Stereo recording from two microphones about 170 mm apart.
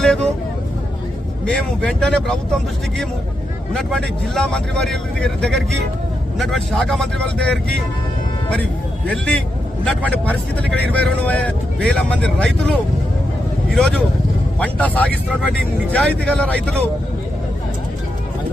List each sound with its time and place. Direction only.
0.0 s speech: 5° left (ahead or behind)
1.5 s speech: 5° left (ahead or behind)
3.7 s speech: 5° left (ahead or behind)
9.0 s speech: 5° left (ahead or behind)
13.7 s speech: 5° left (ahead or behind)